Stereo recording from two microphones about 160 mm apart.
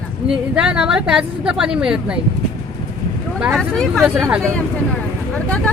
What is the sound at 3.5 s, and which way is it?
Speech, centre (ahead or behind).